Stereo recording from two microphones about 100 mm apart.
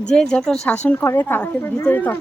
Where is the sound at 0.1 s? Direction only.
10° left (ahead or behind).